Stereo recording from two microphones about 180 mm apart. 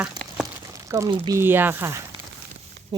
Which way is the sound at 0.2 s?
20° right (ahead or behind).